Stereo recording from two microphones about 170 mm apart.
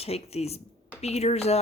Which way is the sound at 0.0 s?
35° left (ahead or behind).